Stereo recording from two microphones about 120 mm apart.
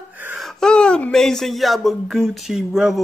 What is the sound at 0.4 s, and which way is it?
Speech, 5° left (ahead or behind).